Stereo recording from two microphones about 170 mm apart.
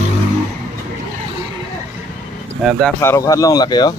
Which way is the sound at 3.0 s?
15° left (ahead or behind).